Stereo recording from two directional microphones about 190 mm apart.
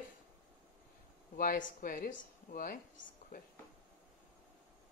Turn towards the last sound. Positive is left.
turn(degrees=50)  # may be behind; listen again after turning